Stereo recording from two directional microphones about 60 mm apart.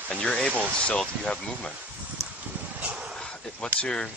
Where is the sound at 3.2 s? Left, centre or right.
Centre.